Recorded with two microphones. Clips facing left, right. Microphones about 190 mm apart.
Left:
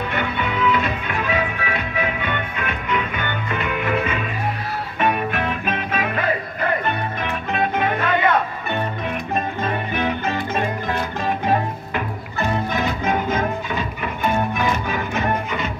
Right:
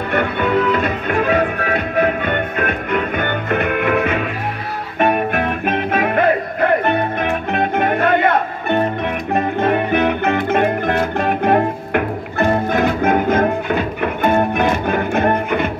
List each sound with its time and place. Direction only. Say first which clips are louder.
0.1 s music: right 7 dB; 50° right (ahead or behind)